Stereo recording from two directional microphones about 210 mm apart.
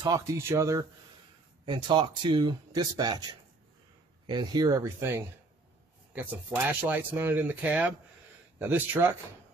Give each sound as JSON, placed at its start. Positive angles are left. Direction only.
{"t": 0.0, "sound": "speech", "side_deg": -15}
{"t": 4.3, "sound": "speech", "side_deg": -20}